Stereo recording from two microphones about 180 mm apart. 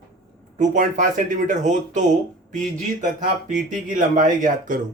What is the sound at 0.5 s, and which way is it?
Speech, 45° right (ahead or behind).